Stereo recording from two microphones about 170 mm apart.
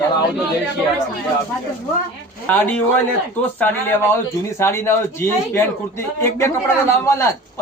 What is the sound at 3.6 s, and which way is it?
A man's voice, 15° left (ahead or behind).